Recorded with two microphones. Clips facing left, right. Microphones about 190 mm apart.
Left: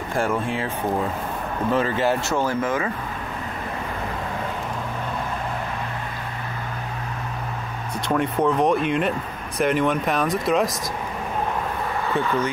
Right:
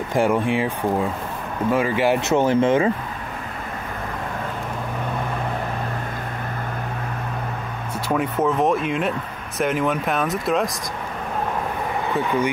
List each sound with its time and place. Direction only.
0.1 s speech: 15° right (ahead or behind)
1.7 s speech: 10° right (ahead or behind); by 2.9 s 25° right (ahead or behind)
8.1 s speech: 5° right (ahead or behind)